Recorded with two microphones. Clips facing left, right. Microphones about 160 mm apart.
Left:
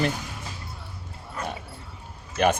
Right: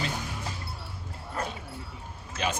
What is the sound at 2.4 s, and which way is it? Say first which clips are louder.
Speech: left 9 dB; 60° left (ahead or behind).